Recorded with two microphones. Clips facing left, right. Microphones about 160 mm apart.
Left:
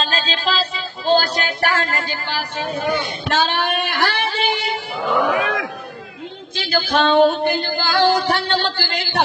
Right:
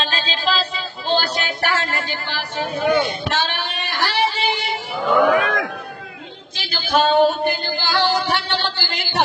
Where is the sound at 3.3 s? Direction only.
55° left (ahead or behind).